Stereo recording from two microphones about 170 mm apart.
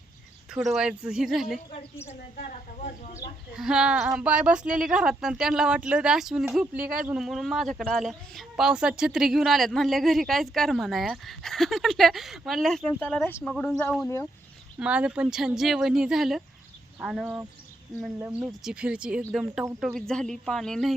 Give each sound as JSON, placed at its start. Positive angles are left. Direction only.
{"t": 0.5, "sound": "a woman's voice", "side_deg": -5}
{"t": 2.8, "sound": "speech", "side_deg": 45}
{"t": 3.5, "sound": "a woman's voice", "side_deg": -5}
{"t": 14.8, "sound": "a woman's voice", "side_deg": -5}